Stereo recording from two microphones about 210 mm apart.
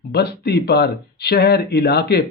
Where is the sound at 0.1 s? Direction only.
50° left (ahead or behind).